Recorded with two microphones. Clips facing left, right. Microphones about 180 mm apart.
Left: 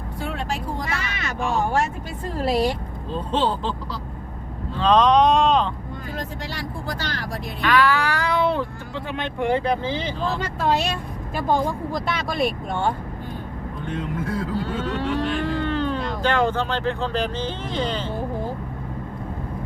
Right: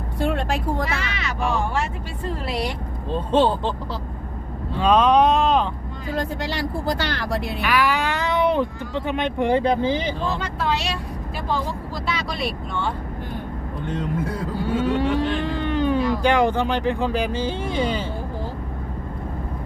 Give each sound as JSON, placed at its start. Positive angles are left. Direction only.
{"t": 0.2, "sound": "vehicle", "side_deg": -60}
{"t": 0.9, "sound": "speech", "side_deg": 50}
{"t": 4.8, "sound": "speech", "side_deg": -10}
{"t": 6.1, "sound": "speech", "side_deg": -70}
{"t": 7.6, "sound": "speech", "side_deg": -10}
{"t": 10.6, "sound": "speech", "side_deg": 45}
{"t": 14.5, "sound": "speech", "side_deg": -10}